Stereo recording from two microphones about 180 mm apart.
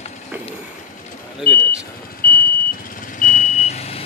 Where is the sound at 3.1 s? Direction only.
45° left (ahead or behind).